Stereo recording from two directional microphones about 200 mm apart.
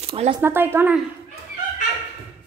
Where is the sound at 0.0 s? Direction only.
30° right (ahead or behind).